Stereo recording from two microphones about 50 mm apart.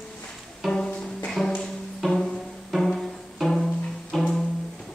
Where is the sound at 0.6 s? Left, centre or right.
Centre.